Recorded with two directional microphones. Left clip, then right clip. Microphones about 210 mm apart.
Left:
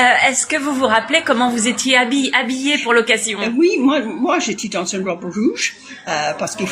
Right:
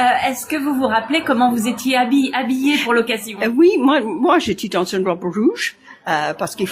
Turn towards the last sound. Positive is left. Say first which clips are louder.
# left 1 dB
turn(degrees=-50)  # may be behind; listen again after turning